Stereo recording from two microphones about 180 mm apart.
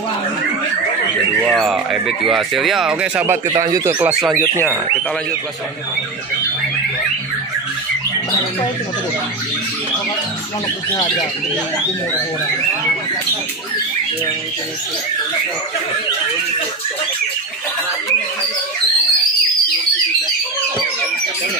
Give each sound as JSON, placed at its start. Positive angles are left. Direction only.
{"t": 1.5, "sound": "speech", "side_deg": 0}
{"t": 3.5, "sound": "speech", "side_deg": -20}
{"t": 4.1, "sound": "speech", "side_deg": 0}
{"t": 4.4, "sound": "speech", "side_deg": 10}